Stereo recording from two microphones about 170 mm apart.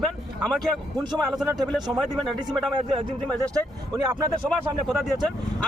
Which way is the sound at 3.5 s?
20° right (ahead or behind).